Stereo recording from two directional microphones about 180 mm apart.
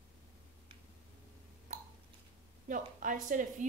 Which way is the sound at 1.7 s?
45° right (ahead or behind).